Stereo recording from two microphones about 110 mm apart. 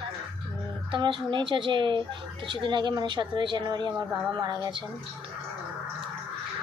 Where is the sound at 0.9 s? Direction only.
45° right (ahead or behind).